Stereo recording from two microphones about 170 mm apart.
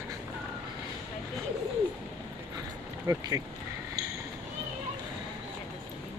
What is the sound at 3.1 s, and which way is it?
Speech, 20° right (ahead or behind).